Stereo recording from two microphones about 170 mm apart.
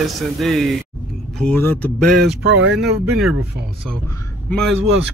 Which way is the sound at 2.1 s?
85° right.